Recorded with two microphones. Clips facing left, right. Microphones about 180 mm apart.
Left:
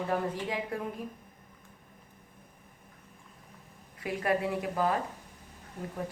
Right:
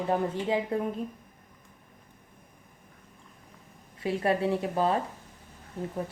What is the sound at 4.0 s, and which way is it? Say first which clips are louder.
Speech: right 3 dB; 30° right (ahead or behind).